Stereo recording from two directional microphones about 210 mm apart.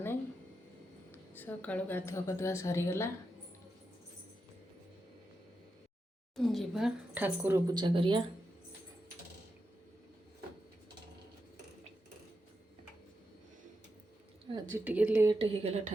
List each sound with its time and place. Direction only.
1.1 s a woman's voice: 10° left (ahead or behind)
6.3 s speech: centre (ahead or behind); by 8.2 s 25° right (ahead or behind)
14.5 s a sound: 15° right (ahead or behind)
14.9 s speech: 10° right (ahead or behind)
15.4 s a woman's voice: 30° right (ahead or behind)